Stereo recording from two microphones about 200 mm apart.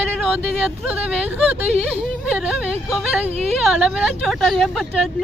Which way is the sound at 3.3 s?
30° right (ahead or behind).